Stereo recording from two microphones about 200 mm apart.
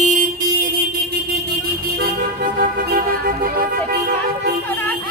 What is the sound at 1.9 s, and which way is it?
Music, 50° right (ahead or behind).